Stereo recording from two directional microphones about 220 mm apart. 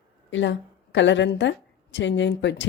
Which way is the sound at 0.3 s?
60° left (ahead or behind).